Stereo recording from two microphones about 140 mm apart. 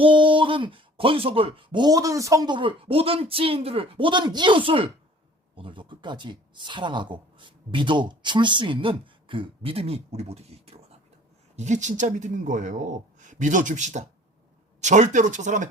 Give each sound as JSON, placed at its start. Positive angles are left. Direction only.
{"t": 0.0, "sound": "speech", "side_deg": -35}
{"t": 11.5, "sound": "speech", "side_deg": -60}